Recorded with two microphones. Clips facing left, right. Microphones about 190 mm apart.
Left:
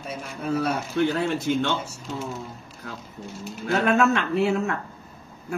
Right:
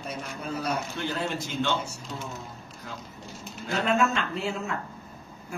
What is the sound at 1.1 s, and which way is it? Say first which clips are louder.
Speech: left 6 dB; 60° left (ahead or behind).